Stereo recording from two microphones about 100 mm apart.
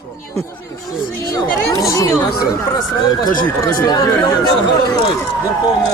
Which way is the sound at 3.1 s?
45° left (ahead or behind).